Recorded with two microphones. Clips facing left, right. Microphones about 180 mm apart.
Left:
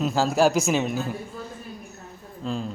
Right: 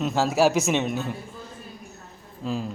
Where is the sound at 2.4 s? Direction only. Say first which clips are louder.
Even; 5° right (ahead or behind).